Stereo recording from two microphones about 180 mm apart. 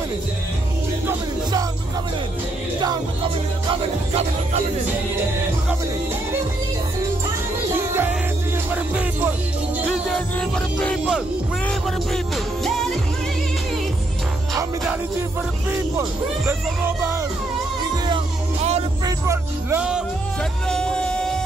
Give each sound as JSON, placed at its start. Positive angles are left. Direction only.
{"t": 1.0, "sound": "music", "side_deg": -20}
{"t": 3.7, "sound": "music", "side_deg": -35}
{"t": 7.7, "sound": "music", "side_deg": -15}
{"t": 18.0, "sound": "music", "side_deg": -30}
{"t": 19.0, "sound": "music", "side_deg": -15}
{"t": 20.6, "sound": "music", "side_deg": 5}